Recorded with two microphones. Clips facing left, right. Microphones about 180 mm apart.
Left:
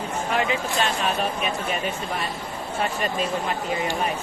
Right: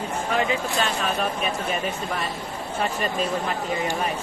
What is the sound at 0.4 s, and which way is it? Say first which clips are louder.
Speech: even; 35° right (ahead or behind).